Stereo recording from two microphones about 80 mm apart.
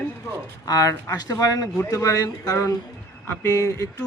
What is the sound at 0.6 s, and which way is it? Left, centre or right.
Speech, left.